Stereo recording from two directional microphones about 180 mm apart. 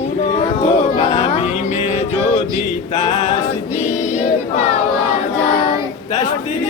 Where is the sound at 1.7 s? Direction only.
40° left (ahead or behind).